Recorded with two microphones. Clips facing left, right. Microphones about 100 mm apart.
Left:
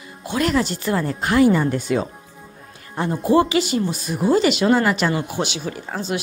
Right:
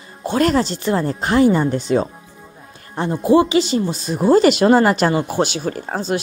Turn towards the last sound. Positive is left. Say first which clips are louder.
# right 4 dB
turn(degrees=-40)  # may be behind; listen again after turning